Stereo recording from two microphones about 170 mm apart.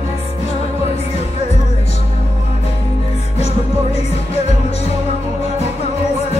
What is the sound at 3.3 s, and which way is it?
Music, 40° left (ahead or behind).